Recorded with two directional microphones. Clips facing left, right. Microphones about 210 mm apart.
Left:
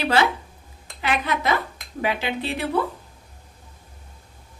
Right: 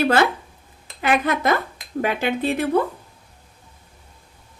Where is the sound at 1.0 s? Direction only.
50° right (ahead or behind).